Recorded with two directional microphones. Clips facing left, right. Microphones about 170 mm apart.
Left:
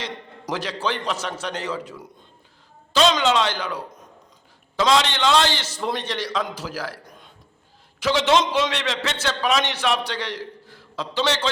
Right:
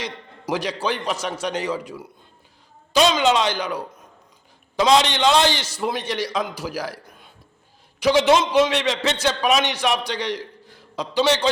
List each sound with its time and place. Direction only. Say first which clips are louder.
0.0 s a man's voice: right 1 dB; 15° right (ahead or behind)